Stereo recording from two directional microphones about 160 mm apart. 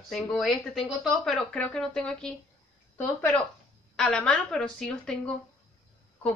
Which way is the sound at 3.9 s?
5° left (ahead or behind).